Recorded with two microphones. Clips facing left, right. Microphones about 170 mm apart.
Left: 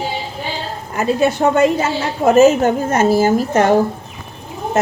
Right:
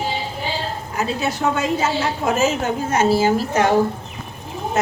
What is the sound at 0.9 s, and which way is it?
A woman's voice, 55° left (ahead or behind).